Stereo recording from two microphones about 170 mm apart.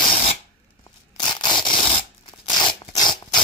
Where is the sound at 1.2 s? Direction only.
25° left (ahead or behind).